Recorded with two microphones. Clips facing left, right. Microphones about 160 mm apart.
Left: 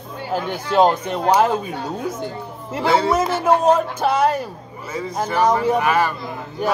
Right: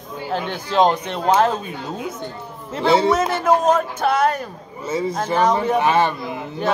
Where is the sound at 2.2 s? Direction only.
10° left (ahead or behind).